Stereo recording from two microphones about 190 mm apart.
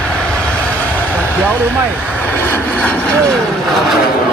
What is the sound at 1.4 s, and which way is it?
Speech, 10° right (ahead or behind).